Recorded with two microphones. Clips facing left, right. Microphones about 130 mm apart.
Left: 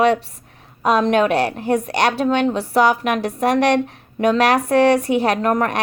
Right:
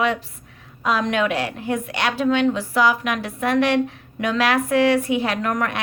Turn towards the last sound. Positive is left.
turn(degrees=40)  # may be behind; listen again after turning